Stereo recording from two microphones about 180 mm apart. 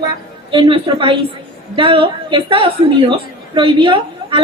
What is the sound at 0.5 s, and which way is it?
A woman's voice, 30° right (ahead or behind).